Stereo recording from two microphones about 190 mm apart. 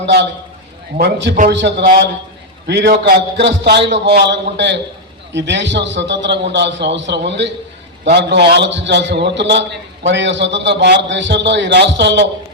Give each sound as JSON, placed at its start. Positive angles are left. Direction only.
{"t": 0.0, "sound": "a man's voice", "side_deg": -60}